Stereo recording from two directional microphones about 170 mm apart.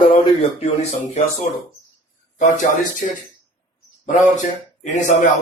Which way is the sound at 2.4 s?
50° left (ahead or behind).